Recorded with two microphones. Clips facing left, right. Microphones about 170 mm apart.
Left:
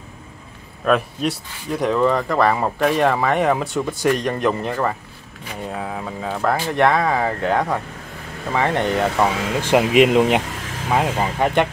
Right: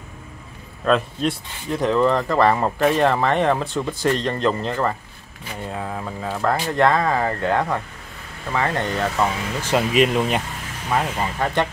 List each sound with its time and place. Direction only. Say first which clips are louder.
0.8 s speech: left 1 dB; 10° left (ahead or behind)